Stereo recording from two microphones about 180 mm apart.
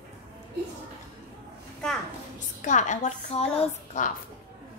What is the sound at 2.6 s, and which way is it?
A woman's voice, 45° left (ahead or behind).